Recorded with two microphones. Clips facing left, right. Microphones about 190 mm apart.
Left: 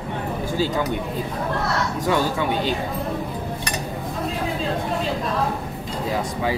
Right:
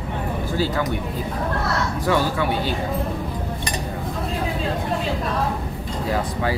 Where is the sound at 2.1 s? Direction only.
20° left (ahead or behind).